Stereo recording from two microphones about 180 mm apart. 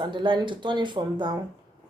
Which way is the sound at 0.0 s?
25° right (ahead or behind).